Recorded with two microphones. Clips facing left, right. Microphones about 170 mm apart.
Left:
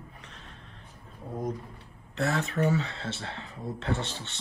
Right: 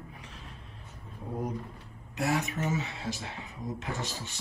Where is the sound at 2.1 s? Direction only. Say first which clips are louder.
Left 1 dB; 15° right (ahead or behind).